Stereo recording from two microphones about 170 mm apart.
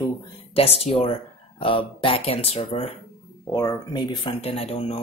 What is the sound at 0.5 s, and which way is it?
Speech, 35° left (ahead or behind).